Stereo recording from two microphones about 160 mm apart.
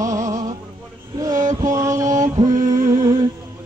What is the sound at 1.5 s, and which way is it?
Mantra, 20° right (ahead or behind).